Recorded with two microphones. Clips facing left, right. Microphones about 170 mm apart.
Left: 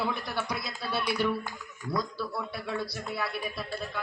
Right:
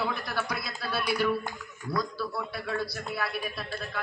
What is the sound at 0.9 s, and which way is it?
Speech, 20° left (ahead or behind).